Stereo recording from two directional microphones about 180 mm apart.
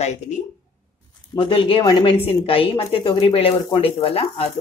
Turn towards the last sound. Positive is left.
turn(degrees=35)  # may be behind; listen again after turning